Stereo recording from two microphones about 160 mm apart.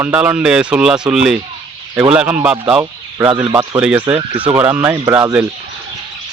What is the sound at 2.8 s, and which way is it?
Speech, 20° right (ahead or behind).